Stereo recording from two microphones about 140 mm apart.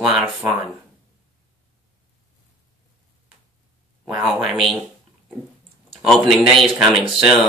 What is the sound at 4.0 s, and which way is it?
Speech, 5° right (ahead or behind).